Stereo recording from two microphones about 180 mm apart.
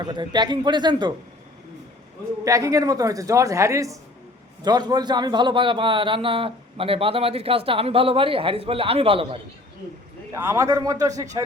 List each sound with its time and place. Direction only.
0.0 s a man's voice: 25° right (ahead or behind)
2.4 s a woman's voice: 20° right (ahead or behind)
10.3 s a woman's voice: 15° right (ahead or behind)